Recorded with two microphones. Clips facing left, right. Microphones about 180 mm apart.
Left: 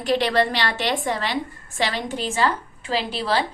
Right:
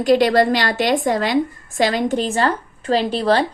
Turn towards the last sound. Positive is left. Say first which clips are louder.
# right 6 dB
turn(degrees=-45)  # may be behind; listen again after turning